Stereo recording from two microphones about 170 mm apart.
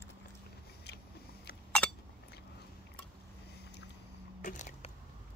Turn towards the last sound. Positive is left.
turn(degrees=45)  # may be behind; listen again after turning